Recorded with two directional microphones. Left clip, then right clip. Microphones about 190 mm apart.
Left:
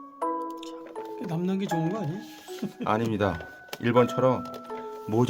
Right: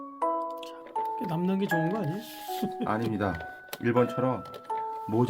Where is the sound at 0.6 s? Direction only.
Centre (ahead or behind).